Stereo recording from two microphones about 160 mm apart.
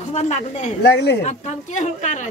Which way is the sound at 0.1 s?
45° left (ahead or behind).